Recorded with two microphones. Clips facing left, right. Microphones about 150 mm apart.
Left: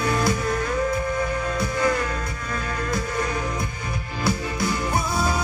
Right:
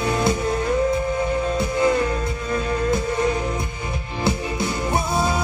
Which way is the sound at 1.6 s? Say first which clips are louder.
Right 3 dB; 25° right (ahead or behind).